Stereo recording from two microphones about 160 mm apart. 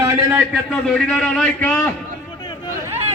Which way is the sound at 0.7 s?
5° left (ahead or behind).